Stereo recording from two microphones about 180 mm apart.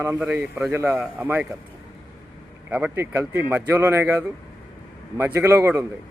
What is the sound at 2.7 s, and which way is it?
A man's voice, 10° right (ahead or behind).